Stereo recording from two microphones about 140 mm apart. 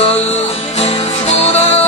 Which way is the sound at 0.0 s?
50° left (ahead or behind).